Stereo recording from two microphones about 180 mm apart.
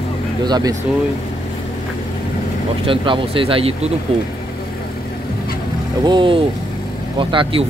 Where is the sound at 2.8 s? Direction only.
30° right (ahead or behind).